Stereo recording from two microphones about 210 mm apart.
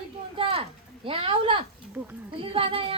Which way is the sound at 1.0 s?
25° right (ahead or behind).